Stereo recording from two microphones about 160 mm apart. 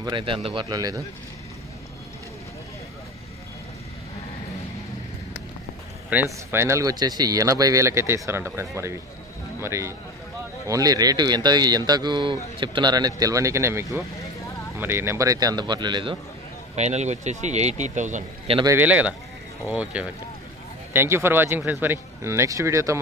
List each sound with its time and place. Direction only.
0.0 s speech: 30° right (ahead or behind)
6.0 s speech: 15° right (ahead or behind); by 16.2 s 30° right (ahead or behind)
16.7 s speech: 45° right (ahead or behind)
18.7 s speech: 10° right (ahead or behind)